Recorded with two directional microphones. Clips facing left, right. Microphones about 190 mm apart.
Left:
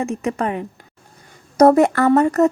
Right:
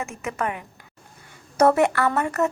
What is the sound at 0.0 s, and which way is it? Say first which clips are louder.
A woman's voice: left 7 dB; 35° left (ahead or behind).